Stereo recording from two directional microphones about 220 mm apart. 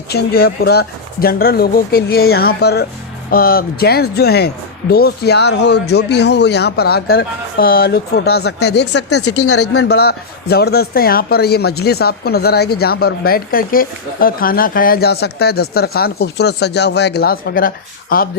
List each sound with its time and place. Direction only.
0.1 s speech: 45° left (ahead or behind)
9.0 s speech: 90° left
9.7 s speech: 45° left (ahead or behind)